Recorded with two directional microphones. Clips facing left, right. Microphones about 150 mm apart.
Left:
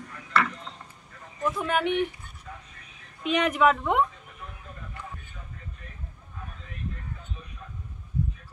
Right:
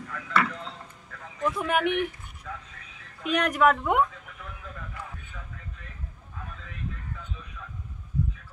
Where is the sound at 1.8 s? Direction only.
75° right (ahead or behind).